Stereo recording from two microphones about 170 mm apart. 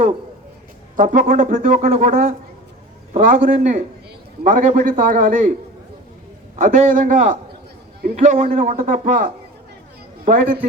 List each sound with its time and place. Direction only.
0.9 s speech: 50° right (ahead or behind)
6.6 s speech: 50° right (ahead or behind)